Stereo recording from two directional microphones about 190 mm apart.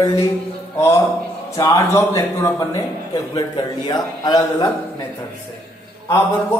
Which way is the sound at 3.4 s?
20° left (ahead or behind).